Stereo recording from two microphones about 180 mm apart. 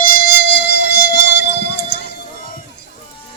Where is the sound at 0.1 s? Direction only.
60° left (ahead or behind).